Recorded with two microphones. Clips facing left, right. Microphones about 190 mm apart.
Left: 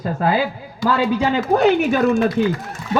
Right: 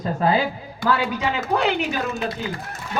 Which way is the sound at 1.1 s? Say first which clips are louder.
Left 6 dB; 30° left (ahead or behind).